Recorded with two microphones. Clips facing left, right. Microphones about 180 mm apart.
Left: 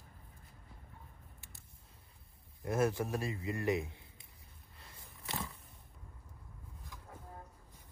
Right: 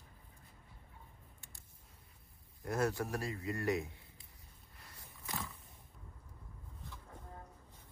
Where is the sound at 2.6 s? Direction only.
25° left (ahead or behind).